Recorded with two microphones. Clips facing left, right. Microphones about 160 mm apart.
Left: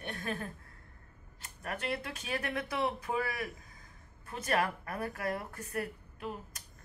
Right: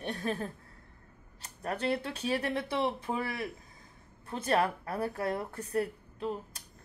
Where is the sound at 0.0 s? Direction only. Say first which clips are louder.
Right 4 dB; 35° right (ahead or behind).